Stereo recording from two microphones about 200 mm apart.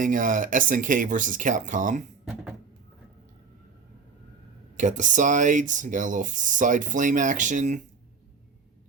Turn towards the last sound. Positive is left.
turn(degrees=-40)  # may be behind; listen again after turning